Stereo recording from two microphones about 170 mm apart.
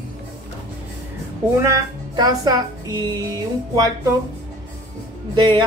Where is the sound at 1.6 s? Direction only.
20° right (ahead or behind).